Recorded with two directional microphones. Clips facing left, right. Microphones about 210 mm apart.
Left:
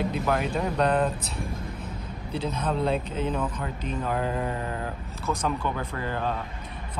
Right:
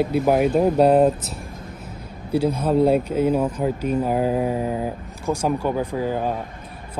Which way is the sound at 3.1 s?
10° right (ahead or behind).